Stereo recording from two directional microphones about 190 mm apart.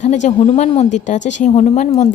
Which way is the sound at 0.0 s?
40° left (ahead or behind).